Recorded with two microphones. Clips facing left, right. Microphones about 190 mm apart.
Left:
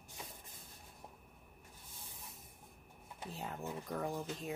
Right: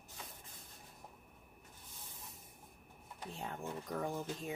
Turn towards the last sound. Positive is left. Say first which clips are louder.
# even
turn(degrees=0)  # may be behind; listen again after turning